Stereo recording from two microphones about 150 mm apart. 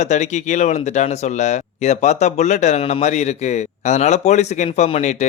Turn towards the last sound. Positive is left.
turn(degrees=50)  # may be behind; listen again after turning